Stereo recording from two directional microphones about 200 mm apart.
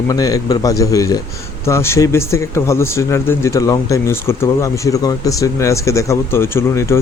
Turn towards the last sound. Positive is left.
turn(degrees=15)  # may be behind; listen again after turning